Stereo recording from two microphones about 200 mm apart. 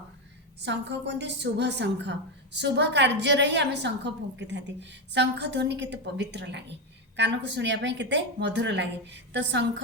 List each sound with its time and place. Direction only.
0.6 s a woman's voice: 60° right (ahead or behind)